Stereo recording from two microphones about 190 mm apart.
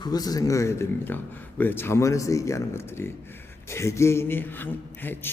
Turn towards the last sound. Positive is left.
turn(degrees=10)  # may be behind; listen again after turning